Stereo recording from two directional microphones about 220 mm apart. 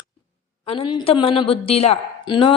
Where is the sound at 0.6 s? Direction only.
25° left (ahead or behind).